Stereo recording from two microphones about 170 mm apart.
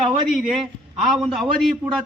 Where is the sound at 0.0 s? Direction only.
Centre (ahead or behind).